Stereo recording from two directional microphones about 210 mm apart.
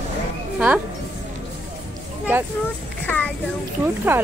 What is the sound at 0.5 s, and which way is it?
Music, 5° right (ahead or behind).